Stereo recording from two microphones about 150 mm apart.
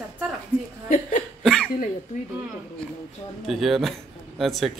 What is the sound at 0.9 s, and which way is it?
Hiccup, 55° left (ahead or behind).